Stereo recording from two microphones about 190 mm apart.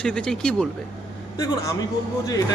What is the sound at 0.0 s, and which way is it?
Speech, 5° left (ahead or behind).